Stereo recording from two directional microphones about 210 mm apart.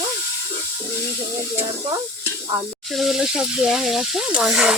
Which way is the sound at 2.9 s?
Centre (ahead or behind).